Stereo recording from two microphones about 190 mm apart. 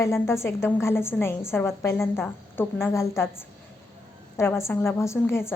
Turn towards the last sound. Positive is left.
turn(degrees=15)  # may be behind; listen again after turning